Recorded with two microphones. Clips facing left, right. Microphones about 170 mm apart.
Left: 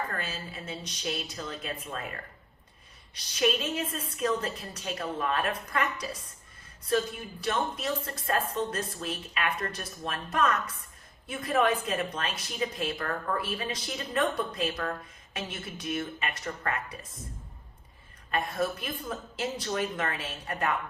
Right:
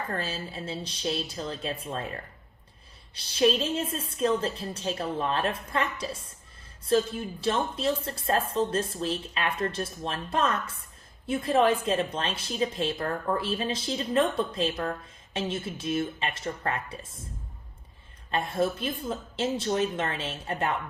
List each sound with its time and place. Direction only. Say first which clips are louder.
0.1 s speech: right 4 dB; 30° right (ahead or behind)
3.2 s a woman's voice: right 4 dB; 30° right (ahead or behind)
18.3 s a woman's voice: right 3 dB; 25° right (ahead or behind)